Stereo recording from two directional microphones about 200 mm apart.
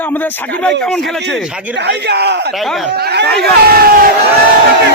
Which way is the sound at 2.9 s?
55° right (ahead or behind).